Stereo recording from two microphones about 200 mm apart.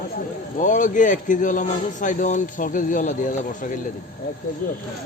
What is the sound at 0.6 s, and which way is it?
A man's voice, 40° left (ahead or behind).